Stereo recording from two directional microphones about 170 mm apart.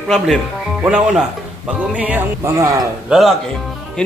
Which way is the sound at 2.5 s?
20° right (ahead or behind).